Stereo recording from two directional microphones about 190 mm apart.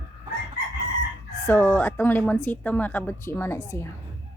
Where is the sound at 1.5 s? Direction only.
10° left (ahead or behind).